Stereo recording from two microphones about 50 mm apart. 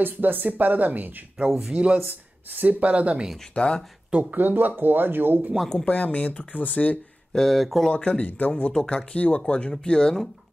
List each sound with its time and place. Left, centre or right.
0.0 s speech: right
1.7 s speech: right
2.0 s speech: right
3.5 s speech: centre
4.2 s speech: right
5.9 s speech: left
7.3 s speech: centre
7.9 s speech: left
8.7 s speech: centre